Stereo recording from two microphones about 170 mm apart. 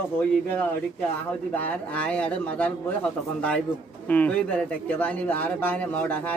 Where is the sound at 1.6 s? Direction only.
10° left (ahead or behind).